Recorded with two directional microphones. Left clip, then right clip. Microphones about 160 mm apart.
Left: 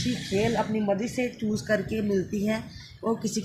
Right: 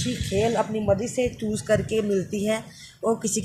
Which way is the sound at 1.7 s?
60° right (ahead or behind).